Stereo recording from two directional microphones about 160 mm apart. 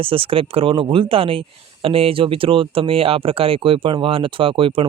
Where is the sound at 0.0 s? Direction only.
35° right (ahead or behind).